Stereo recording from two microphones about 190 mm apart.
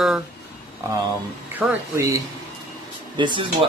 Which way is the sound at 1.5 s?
10° right (ahead or behind).